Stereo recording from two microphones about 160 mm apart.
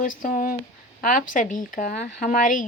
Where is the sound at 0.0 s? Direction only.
55° left (ahead or behind).